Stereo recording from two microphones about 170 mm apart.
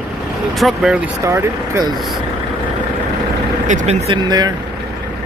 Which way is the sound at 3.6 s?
40° right (ahead or behind).